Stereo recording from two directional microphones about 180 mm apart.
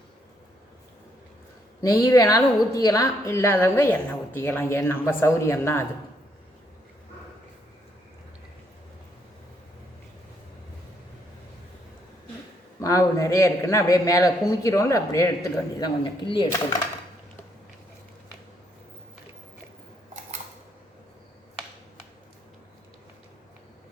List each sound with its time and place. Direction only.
1.8 s a woman's voice: 20° left (ahead or behind)
12.8 s a man's voice: 20° left (ahead or behind)